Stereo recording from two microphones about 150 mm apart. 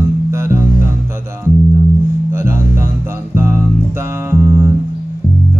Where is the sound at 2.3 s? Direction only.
15° right (ahead or behind).